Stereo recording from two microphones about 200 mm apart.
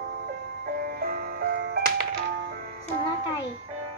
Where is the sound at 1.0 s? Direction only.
50° right (ahead or behind).